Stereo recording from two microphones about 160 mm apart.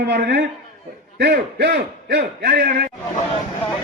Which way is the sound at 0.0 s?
90° right.